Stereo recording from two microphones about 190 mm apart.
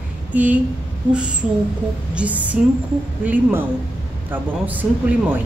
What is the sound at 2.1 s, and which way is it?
Speech, 5° right (ahead or behind).